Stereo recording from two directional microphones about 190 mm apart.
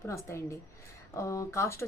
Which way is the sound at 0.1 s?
15° left (ahead or behind).